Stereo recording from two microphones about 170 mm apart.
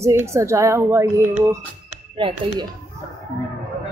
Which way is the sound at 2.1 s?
30° right (ahead or behind).